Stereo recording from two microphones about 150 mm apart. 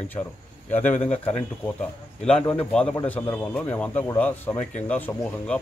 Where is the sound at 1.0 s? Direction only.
45° left (ahead or behind).